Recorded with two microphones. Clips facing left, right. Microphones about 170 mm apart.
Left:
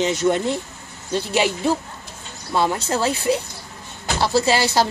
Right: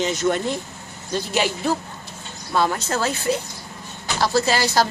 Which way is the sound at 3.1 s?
10° left (ahead or behind).